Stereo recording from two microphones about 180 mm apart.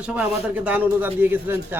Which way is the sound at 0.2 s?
10° right (ahead or behind).